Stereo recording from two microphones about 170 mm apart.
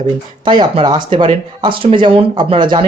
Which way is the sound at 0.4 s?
30° right (ahead or behind).